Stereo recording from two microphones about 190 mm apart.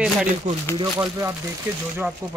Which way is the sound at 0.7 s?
25° right (ahead or behind).